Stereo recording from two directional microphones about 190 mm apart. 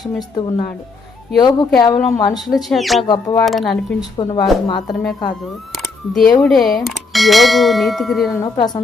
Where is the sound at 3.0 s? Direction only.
20° left (ahead or behind).